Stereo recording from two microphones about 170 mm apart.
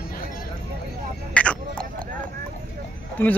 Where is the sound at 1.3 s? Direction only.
5° left (ahead or behind).